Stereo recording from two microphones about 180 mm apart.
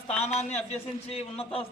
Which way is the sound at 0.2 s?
35° left (ahead or behind).